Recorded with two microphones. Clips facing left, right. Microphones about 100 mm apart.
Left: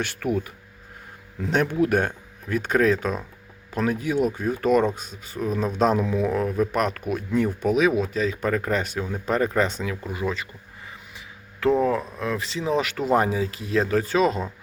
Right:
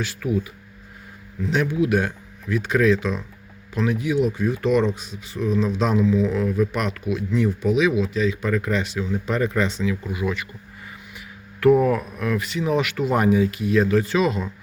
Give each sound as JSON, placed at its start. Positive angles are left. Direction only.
{"t": 0.0, "sound": "speech", "side_deg": 65}
{"t": 1.5, "sound": "speech", "side_deg": 50}
{"t": 11.6, "sound": "speech", "side_deg": 25}